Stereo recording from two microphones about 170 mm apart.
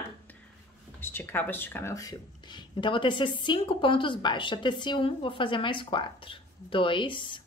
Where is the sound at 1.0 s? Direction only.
15° left (ahead or behind).